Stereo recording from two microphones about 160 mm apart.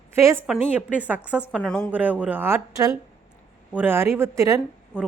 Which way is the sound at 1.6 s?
5° left (ahead or behind).